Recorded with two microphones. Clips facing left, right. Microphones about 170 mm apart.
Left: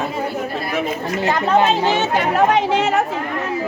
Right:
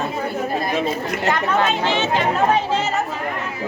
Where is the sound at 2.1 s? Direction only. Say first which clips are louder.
Left 2 dB; 70° left (ahead or behind).